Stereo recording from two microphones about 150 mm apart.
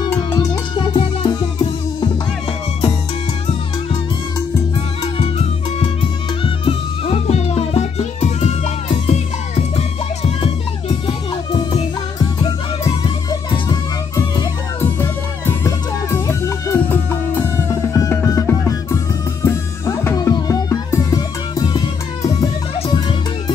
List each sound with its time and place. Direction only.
0.1 s music: 15° left (ahead or behind)
0.7 s music: 30° left (ahead or behind)
5.0 s music: 35° left (ahead or behind)